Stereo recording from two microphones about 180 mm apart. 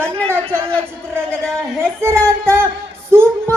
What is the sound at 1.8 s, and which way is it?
Speech, 15° right (ahead or behind).